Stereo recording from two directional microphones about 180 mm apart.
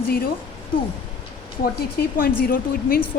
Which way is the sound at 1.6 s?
55° left (ahead or behind).